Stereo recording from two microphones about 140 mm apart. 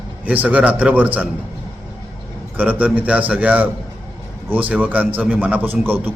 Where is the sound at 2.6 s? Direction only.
10° right (ahead or behind).